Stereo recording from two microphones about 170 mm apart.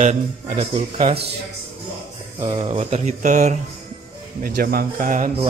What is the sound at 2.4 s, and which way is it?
Speech, 30° right (ahead or behind).